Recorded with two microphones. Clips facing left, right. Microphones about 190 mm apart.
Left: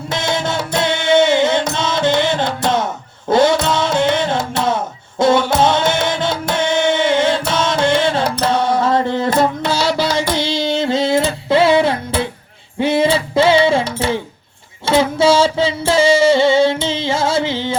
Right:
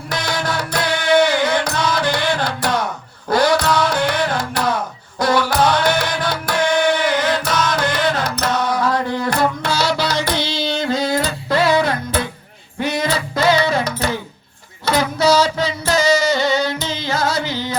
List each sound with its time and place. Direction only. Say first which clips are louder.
0.1 s music: left 3 dB; 25° left (ahead or behind)
10.0 s carnatic music: left 3 dB; 50° left (ahead or behind)
10.7 s music: left 3 dB; 25° left (ahead or behind)